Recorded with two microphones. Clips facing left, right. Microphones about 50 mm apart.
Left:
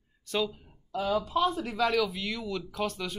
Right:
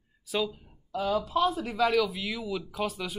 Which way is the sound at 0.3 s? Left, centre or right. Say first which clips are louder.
Even; centre.